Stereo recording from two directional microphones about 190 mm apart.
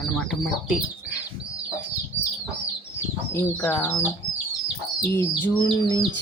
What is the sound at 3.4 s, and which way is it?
Speech, 10° left (ahead or behind).